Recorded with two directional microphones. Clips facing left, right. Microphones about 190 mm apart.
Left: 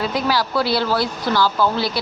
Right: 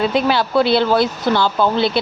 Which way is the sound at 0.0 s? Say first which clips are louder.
Right 4 dB; 25° right (ahead or behind).